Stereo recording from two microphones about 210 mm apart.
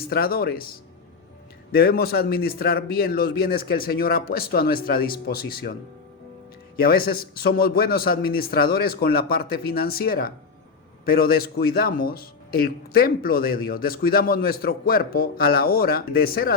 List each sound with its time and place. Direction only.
0.1 s a man's voice: 45° left (ahead or behind)
1.7 s a man's voice: 45° left (ahead or behind)
6.7 s a man's voice: 45° left (ahead or behind)